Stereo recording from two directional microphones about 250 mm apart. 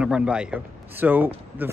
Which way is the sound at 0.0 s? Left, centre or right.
Centre.